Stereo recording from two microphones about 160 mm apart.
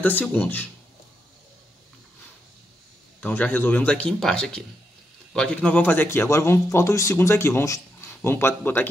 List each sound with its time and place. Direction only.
0.0 s speech: 10° left (ahead or behind)
3.2 s speech: 10° left (ahead or behind)